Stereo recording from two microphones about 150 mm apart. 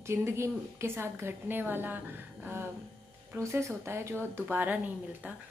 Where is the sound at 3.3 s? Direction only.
20° right (ahead or behind).